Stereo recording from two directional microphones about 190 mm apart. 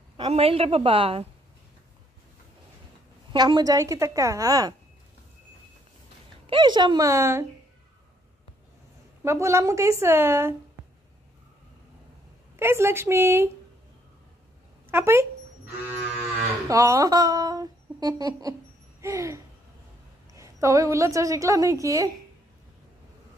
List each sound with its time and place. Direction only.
0.2 s a woman's voice: 30° right (ahead or behind)
3.3 s a woman's voice: 20° right (ahead or behind)
6.4 s a woman's voice: 25° right (ahead or behind)
9.2 s a woman's voice: 15° right (ahead or behind)
12.5 s a woman's voice: 15° right (ahead or behind)
14.9 s a sound: 15° right (ahead or behind)
16.2 s livestock: 15° right (ahead or behind)
18.9 s a sound: 15° right (ahead or behind)
20.3 s a woman's voice: 15° right (ahead or behind)